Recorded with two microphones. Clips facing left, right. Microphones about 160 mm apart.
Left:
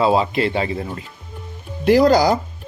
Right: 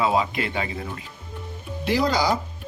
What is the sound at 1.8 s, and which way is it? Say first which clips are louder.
Speech: left 9 dB; 45° left (ahead or behind).